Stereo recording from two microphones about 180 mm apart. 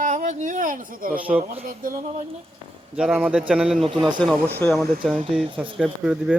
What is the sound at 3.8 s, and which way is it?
Speech, 25° right (ahead or behind).